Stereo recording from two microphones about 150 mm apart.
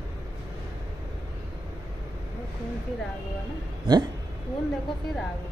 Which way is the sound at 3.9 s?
30° right (ahead or behind).